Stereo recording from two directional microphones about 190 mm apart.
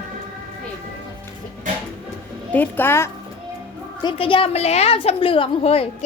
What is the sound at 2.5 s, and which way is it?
Speech, 10° left (ahead or behind).